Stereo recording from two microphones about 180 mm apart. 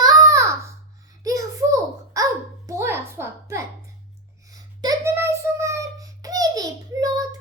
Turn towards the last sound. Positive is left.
turn(degrees=-20)  # may be behind; listen again after turning